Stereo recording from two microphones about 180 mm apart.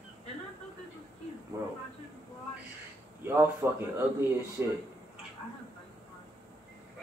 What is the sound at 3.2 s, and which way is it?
A man's voice, 10° right (ahead or behind).